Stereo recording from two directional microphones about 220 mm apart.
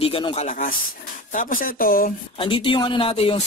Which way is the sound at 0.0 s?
25° left (ahead or behind).